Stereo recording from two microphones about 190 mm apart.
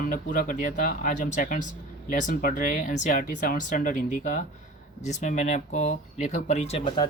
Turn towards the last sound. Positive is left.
turn(degrees=25)  # may be behind; listen again after turning